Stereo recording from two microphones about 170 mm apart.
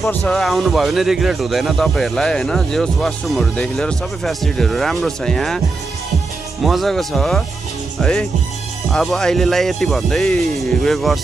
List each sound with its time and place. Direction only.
0.1 s speech: 5° left (ahead or behind)
6.6 s speech: centre (ahead or behind)